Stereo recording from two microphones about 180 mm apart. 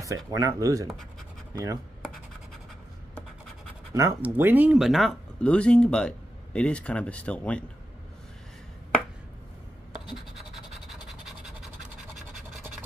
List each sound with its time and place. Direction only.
0.3 s speech: 20° right (ahead or behind)
1.5 s chopping: 20° right (ahead or behind)
3.9 s speech: 15° right (ahead or behind); by 7.6 s 5° left (ahead or behind)
10.3 s scratch: centre (ahead or behind)